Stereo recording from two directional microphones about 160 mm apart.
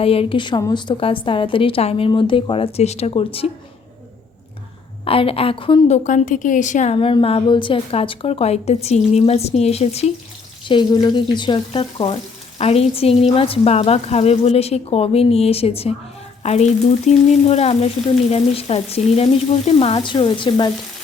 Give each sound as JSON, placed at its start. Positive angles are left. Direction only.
{"t": 0.0, "sound": "speech", "side_deg": 35}
{"t": 5.0, "sound": "speech", "side_deg": 35}
{"t": 6.0, "sound": "a woman's voice", "side_deg": 50}
{"t": 6.9, "sound": "speech", "side_deg": 35}
{"t": 10.7, "sound": "speech", "side_deg": 30}